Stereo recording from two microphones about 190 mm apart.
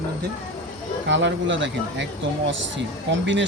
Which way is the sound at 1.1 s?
70° right (ahead or behind).